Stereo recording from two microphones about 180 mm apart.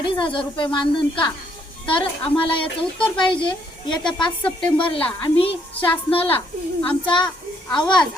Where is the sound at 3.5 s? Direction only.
25° left (ahead or behind).